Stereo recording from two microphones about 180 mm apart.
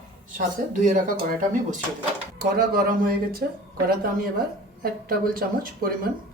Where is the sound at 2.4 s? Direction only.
50° right (ahead or behind).